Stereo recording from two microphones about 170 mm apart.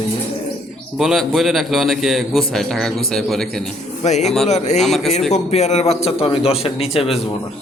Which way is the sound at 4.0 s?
45° left (ahead or behind).